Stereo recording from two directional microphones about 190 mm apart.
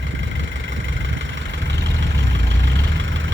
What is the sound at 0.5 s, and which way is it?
Vehicle, 80° right.